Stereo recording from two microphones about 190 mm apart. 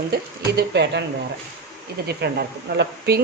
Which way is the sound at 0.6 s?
65° right (ahead or behind).